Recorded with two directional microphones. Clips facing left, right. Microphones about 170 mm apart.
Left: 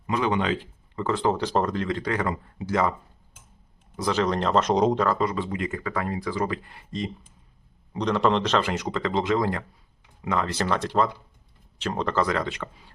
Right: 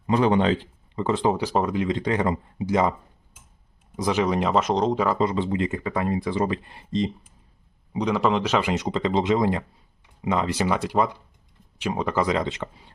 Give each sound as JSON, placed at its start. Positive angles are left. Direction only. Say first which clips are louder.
{"t": 0.1, "sound": "speech", "louder": "right 5 dB", "side_deg": -35}
{"t": 0.9, "sound": "speech", "louder": "right 2 dB", "side_deg": -20}
{"t": 3.9, "sound": "speech", "louder": "right 2 dB", "side_deg": -15}
{"t": 4.7, "sound": "speech", "louder": "left 1 dB", "side_deg": 5}
{"t": 5.1, "sound": "speech", "louder": "right 3 dB", "side_deg": -25}
{"t": 7.9, "sound": "speech", "louder": "even", "side_deg": -5}
{"t": 8.7, "sound": "speech", "louder": "right 3 dB", "side_deg": -20}